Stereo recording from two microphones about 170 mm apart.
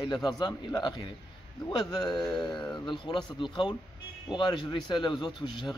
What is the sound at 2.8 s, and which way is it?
A man's voice, 25° left (ahead or behind).